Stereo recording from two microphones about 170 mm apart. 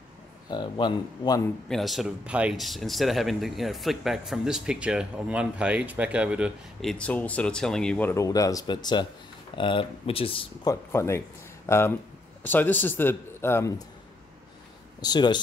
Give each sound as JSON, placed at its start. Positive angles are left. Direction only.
{"t": 0.5, "sound": "speech", "side_deg": 25}
{"t": 1.7, "sound": "speech", "side_deg": 0}
{"t": 10.7, "sound": "a man's voice", "side_deg": 15}
{"t": 15.0, "sound": "speech", "side_deg": 25}